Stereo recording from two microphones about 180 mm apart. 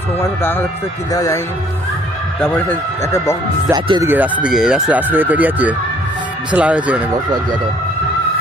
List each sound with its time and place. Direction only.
0.2 s speech: 10° left (ahead or behind)
2.4 s speech: 10° left (ahead or behind)
3.7 s speech: 25° right (ahead or behind)
4.1 s speech: 10° right (ahead or behind)